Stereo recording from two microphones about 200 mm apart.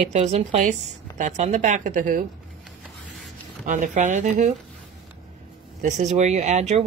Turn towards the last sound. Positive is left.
turn(degrees=-35)  # may be behind; listen again after turning